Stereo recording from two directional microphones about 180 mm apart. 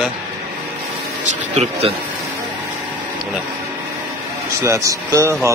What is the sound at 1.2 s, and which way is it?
Speech, 40° right (ahead or behind).